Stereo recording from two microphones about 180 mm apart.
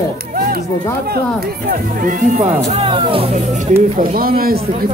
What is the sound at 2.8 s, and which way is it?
Speech, 30° right (ahead or behind).